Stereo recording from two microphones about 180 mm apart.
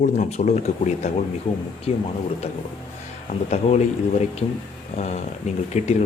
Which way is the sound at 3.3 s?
40° left (ahead or behind).